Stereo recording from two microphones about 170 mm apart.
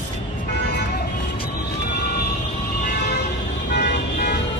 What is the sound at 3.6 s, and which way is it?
Vehicle, 75° left (ahead or behind).